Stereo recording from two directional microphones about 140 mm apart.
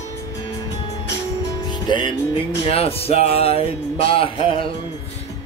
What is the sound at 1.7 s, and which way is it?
Music, 35° left (ahead or behind).